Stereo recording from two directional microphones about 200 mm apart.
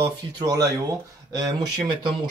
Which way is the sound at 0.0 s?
20° right (ahead or behind).